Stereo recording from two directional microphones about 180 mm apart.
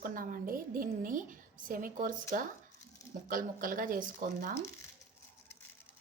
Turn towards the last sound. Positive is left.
turn(degrees=-50)  # may be behind; listen again after turning